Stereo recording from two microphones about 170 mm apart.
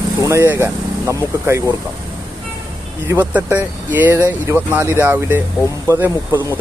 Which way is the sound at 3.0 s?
10° right (ahead or behind).